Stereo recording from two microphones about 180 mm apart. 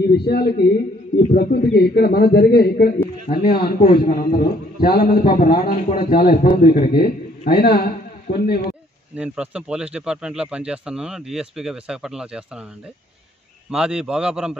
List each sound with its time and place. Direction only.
0.1 s a man's voice: 65° left (ahead or behind)
9.1 s speech: 10° right (ahead or behind)
13.7 s speech: 5° right (ahead or behind)